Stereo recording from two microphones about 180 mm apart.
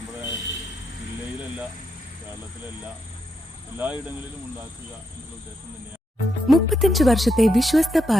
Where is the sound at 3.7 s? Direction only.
10° right (ahead or behind).